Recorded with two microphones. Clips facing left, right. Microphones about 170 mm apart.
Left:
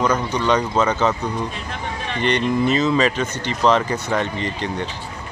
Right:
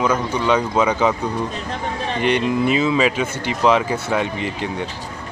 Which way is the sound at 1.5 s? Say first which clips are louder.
Right 3 dB; 40° right (ahead or behind).